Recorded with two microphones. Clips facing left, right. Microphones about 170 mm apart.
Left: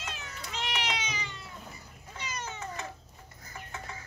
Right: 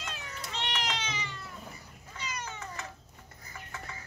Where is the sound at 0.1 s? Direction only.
35° right (ahead or behind).